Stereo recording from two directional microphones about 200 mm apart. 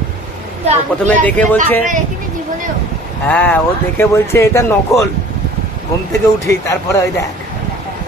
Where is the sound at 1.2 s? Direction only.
10° left (ahead or behind).